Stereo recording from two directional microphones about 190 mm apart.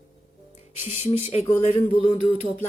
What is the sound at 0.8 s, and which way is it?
Speech, 30° left (ahead or behind).